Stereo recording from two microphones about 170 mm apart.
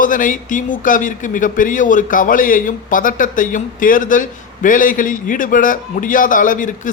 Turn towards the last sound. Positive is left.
turn(degrees=50)  # may be behind; listen again after turning